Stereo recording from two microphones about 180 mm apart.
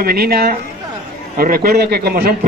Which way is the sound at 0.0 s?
60° right (ahead or behind).